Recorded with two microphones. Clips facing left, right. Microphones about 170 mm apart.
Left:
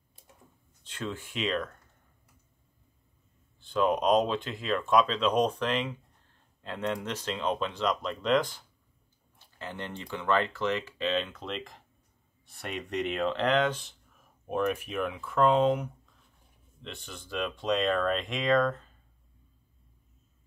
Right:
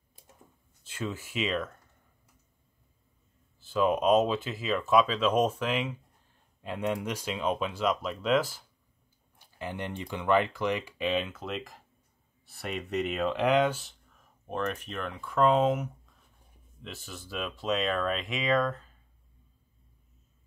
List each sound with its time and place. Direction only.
0.8 s speech: 5° right (ahead or behind)
3.5 s speech: 5° right (ahead or behind)
14.5 s speech: 10° left (ahead or behind)